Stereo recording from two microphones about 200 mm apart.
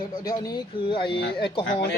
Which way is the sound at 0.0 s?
20° left (ahead or behind).